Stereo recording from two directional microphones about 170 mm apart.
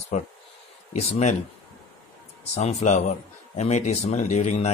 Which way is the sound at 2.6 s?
40° left (ahead or behind).